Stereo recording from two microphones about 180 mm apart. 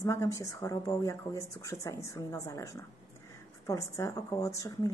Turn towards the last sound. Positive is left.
turn(degrees=20)  # may be behind; listen again after turning